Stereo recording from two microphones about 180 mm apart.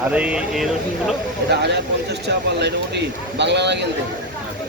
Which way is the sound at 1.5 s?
70° right (ahead or behind).